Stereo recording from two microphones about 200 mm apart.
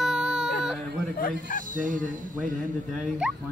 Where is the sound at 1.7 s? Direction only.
40° right (ahead or behind).